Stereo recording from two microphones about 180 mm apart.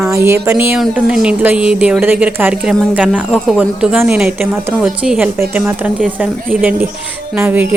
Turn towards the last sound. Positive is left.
turn(degrees=-10)  # may be behind; listen again after turning